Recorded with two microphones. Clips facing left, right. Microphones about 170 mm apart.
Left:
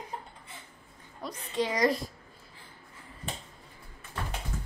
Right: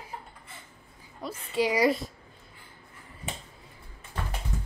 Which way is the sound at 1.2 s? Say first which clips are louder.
Right 3 dB; 5° right (ahead or behind).